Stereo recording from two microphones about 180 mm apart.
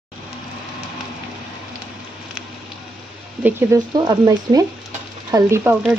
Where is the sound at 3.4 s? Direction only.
15° right (ahead or behind).